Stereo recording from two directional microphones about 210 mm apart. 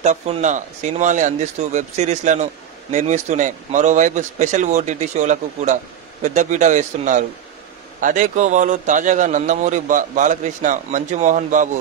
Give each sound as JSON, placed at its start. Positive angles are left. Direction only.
{"t": 0.0, "sound": "speech", "side_deg": -35}